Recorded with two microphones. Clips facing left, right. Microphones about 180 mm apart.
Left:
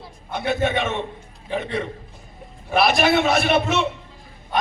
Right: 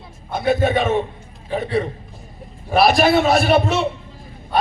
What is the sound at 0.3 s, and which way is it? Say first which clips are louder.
A man's voice: right 4 dB; 40° right (ahead or behind).